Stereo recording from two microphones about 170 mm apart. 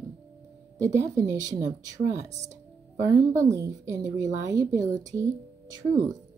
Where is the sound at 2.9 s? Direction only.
20° right (ahead or behind).